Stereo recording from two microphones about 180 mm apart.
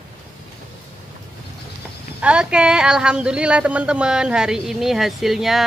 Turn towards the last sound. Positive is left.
turn(degrees=0)  # may be behind; listen again after turning